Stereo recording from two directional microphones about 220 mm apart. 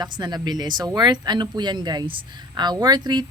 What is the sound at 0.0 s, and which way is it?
Speech, 20° right (ahead or behind).